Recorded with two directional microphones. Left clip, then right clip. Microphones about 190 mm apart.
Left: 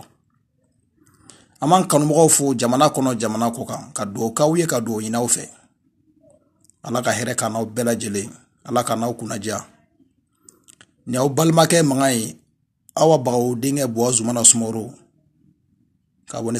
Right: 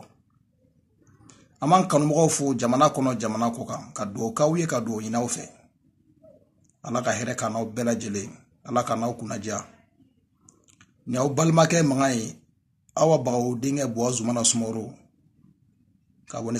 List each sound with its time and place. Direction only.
1.2 s a man's voice: 25° left (ahead or behind)
6.8 s a man's voice: 25° left (ahead or behind)
16.3 s speech: 25° left (ahead or behind)